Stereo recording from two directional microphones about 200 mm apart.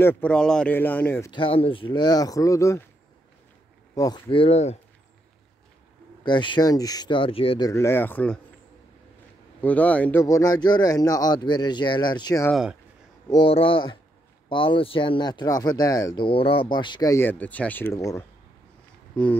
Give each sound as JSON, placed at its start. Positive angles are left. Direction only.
{"t": 0.0, "sound": "speech", "side_deg": 10}
{"t": 1.3, "sound": "speech", "side_deg": 25}
{"t": 3.9, "sound": "speech", "side_deg": 20}
{"t": 6.2, "sound": "speech", "side_deg": 25}
{"t": 9.6, "sound": "speech", "side_deg": 5}
{"t": 10.2, "sound": "speech", "side_deg": 15}